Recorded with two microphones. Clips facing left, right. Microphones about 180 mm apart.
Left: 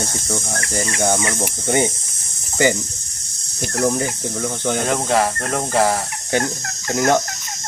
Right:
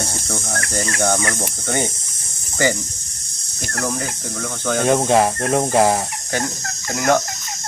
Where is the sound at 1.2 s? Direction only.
15° left (ahead or behind).